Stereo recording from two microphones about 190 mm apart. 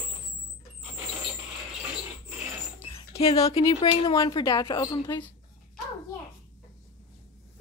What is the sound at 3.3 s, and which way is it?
Speech, 20° left (ahead or behind).